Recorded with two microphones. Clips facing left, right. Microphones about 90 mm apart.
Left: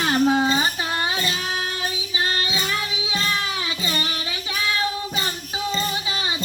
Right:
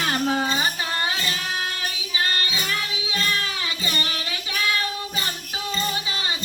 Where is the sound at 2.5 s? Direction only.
20° left (ahead or behind).